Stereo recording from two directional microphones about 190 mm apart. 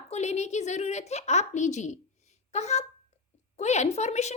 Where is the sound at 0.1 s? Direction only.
35° left (ahead or behind).